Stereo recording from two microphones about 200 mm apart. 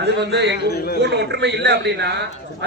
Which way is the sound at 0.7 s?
55° left (ahead or behind).